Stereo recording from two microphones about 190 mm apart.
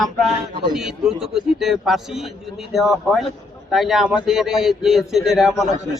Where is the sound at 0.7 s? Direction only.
Centre (ahead or behind).